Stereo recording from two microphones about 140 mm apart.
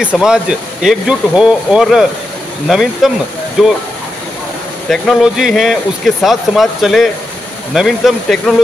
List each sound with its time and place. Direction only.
0.0 s speech: 5° right (ahead or behind)
4.8 s speech: 5° left (ahead or behind)